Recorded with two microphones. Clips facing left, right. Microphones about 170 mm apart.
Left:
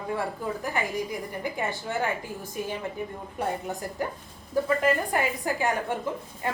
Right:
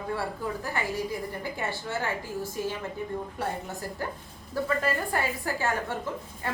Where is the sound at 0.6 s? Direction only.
15° left (ahead or behind).